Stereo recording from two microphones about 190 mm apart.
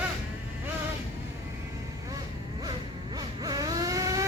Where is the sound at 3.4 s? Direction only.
20° right (ahead or behind).